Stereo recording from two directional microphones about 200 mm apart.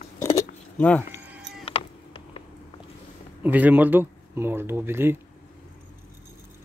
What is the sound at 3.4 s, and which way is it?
Speech, 10° right (ahead or behind).